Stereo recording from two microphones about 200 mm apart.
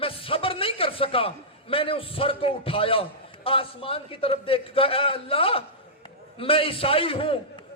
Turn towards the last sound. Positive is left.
turn(degrees=25)  # may be behind; listen again after turning